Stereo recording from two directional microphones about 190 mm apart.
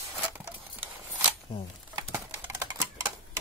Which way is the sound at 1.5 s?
30° left (ahead or behind).